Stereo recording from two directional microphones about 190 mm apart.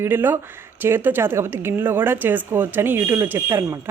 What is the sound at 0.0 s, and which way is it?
Speech, 10° right (ahead or behind).